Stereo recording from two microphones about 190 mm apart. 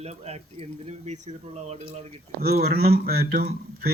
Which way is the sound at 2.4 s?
55° right (ahead or behind).